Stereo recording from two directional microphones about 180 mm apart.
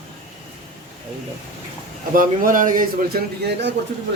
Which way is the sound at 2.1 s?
50° right (ahead or behind).